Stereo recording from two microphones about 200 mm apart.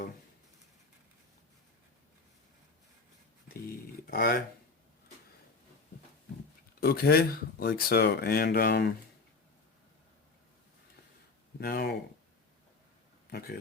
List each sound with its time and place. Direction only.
4.0 s speech: 50° left (ahead or behind)
6.7 s speech: 50° left (ahead or behind)
11.6 s speech: 50° left (ahead or behind)
13.3 s speech: 50° left (ahead or behind)